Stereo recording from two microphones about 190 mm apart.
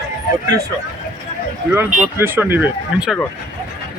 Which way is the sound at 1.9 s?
10° right (ahead or behind).